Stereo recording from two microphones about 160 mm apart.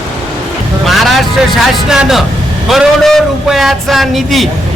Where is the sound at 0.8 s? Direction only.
Centre (ahead or behind).